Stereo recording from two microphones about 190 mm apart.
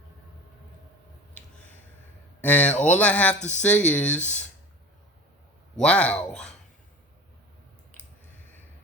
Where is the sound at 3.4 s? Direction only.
40° left (ahead or behind).